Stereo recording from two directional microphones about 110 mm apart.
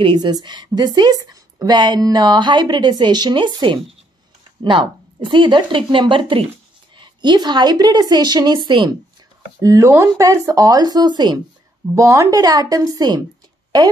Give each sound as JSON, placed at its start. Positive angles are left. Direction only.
{"t": 0.0, "sound": "a woman's voice", "side_deg": -40}
{"t": 9.6, "sound": "a woman's voice", "side_deg": -30}
{"t": 11.9, "sound": "a woman's voice", "side_deg": -25}